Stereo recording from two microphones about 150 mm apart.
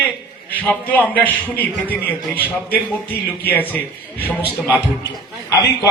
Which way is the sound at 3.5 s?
10° left (ahead or behind).